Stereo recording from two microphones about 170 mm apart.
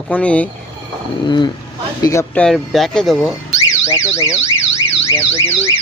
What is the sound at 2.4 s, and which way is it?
Speech, centre (ahead or behind).